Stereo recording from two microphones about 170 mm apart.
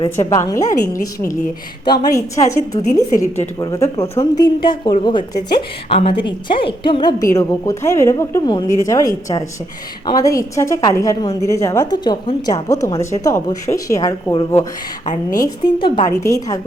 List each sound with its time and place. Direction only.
0.3 s a woman's voice: 20° left (ahead or behind)
1.8 s a woman's voice: 25° left (ahead or behind)
3.6 s a woman's voice: 20° left (ahead or behind)
15.0 s a woman's voice: 45° left (ahead or behind)
15.4 s a woman's voice: 25° left (ahead or behind)